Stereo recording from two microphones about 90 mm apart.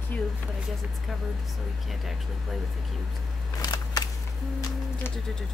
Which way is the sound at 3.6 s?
45° left (ahead or behind).